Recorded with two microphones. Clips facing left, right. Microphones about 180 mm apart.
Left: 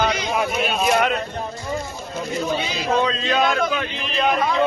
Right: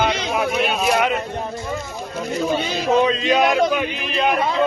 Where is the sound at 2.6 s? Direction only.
45° right (ahead or behind).